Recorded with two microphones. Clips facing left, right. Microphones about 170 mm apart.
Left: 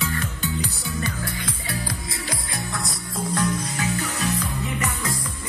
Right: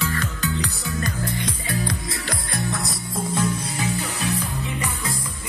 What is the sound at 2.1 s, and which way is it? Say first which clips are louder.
Music: right 2 dB; centre (ahead or behind).